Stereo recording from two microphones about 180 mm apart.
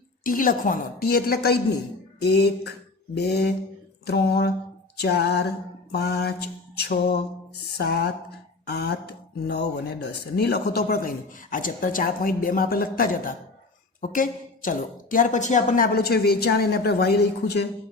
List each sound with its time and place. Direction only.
0.3 s speech: 50° left (ahead or behind); by 17.7 s 65° left (ahead or behind)